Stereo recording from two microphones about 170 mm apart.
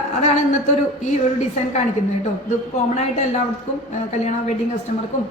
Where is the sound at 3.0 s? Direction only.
40° left (ahead or behind).